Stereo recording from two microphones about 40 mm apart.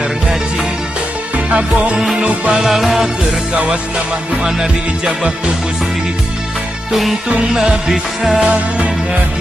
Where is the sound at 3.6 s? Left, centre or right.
Centre.